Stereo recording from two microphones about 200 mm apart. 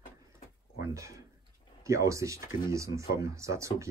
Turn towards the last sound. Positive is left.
turn(degrees=-15)  # may be behind; listen again after turning